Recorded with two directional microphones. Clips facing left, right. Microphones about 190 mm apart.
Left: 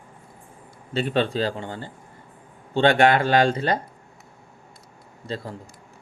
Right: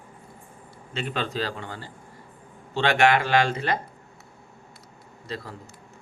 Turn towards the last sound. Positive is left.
turn(degrees=30)  # may be behind; listen again after turning